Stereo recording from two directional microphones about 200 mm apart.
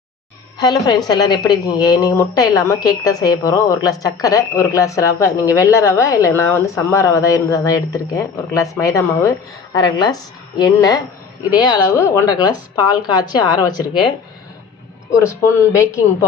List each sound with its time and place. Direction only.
0.6 s a woman's voice: 20° left (ahead or behind)
15.1 s a woman's voice: 15° left (ahead or behind)